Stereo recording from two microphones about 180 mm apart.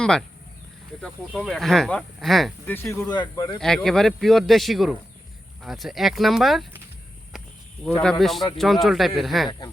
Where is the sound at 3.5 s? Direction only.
5° left (ahead or behind).